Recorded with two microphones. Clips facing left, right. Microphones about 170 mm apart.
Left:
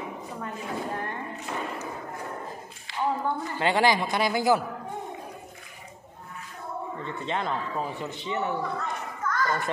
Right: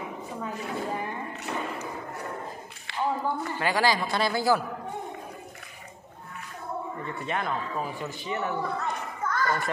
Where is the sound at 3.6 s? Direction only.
25° left (ahead or behind).